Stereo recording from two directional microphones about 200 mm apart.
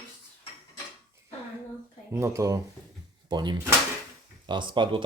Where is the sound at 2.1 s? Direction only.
15° right (ahead or behind).